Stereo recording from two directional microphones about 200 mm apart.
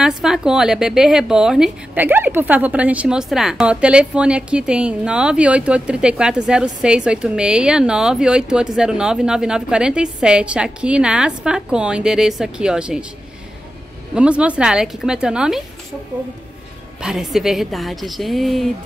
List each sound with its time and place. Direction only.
0.0 s a woman's voice: 5° right (ahead or behind)
14.1 s a woman's voice: 5° right (ahead or behind)
17.0 s a woman's voice: centre (ahead or behind)